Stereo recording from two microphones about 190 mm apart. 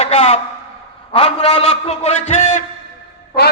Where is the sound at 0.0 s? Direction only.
35° left (ahead or behind).